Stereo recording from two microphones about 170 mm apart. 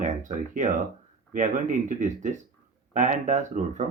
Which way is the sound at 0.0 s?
45° right (ahead or behind).